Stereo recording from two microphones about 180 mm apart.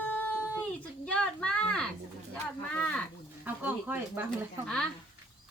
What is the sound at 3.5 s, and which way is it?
Speech, 10° right (ahead or behind).